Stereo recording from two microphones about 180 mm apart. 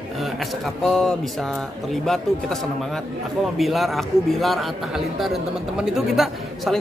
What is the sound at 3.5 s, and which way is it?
Speech, centre (ahead or behind).